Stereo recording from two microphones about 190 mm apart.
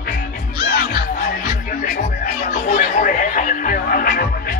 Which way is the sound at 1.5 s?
45° left (ahead or behind).